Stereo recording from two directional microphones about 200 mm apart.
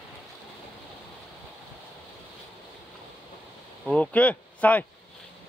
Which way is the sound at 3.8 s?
5° left (ahead or behind).